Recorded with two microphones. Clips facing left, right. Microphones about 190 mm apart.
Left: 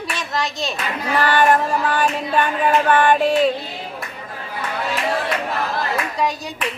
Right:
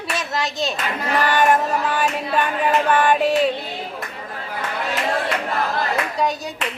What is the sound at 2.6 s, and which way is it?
Child singing, 5° right (ahead or behind).